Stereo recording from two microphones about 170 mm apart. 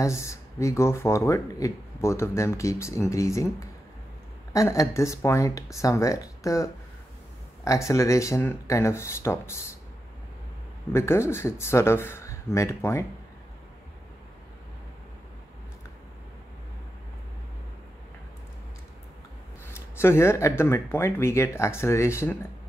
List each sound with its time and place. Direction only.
0.0 s speech: 15° left (ahead or behind)
10.9 s speech: 15° left (ahead or behind)
19.6 s speech: 15° left (ahead or behind)